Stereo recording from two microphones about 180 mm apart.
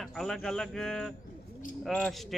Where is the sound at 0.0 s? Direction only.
Centre (ahead or behind).